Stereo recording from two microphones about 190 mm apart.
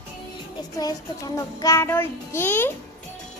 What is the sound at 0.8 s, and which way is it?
A child's voice, 20° left (ahead or behind).